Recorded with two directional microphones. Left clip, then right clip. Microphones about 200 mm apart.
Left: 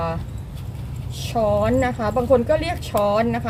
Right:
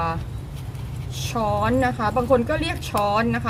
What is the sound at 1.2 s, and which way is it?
Speech, 10° right (ahead or behind).